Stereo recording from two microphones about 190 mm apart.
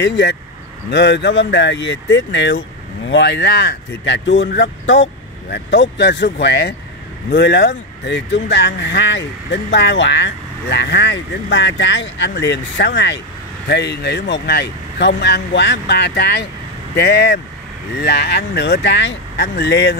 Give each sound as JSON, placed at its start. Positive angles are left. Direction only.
{"t": 0.0, "sound": "speech", "side_deg": 65}